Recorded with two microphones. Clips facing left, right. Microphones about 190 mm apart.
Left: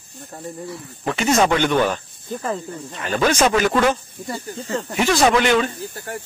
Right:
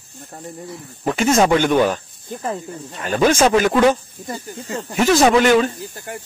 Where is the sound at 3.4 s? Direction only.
10° right (ahead or behind).